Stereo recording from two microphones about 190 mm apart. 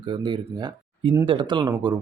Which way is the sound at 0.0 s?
25° right (ahead or behind).